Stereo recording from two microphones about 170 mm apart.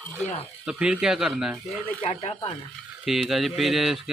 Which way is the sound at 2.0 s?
35° left (ahead or behind).